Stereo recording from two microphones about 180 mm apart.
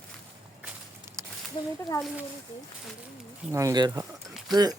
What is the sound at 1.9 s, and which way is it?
Speech, 20° left (ahead or behind).